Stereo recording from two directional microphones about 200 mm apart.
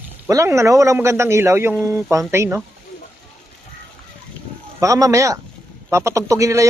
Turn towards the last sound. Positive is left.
turn(degrees=-15)  # may be behind; listen again after turning